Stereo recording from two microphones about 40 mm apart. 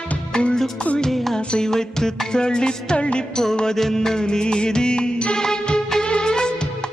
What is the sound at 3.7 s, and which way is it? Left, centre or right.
Music, centre.